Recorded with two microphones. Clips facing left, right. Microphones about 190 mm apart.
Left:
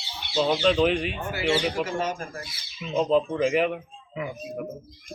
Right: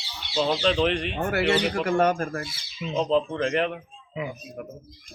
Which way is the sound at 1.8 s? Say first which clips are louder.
Right 6 dB; 60° right (ahead or behind).